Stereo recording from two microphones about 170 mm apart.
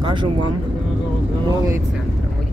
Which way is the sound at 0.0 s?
30° right (ahead or behind).